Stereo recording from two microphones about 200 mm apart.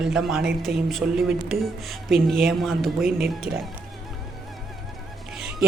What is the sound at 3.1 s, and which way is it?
Speech, 50° right (ahead or behind).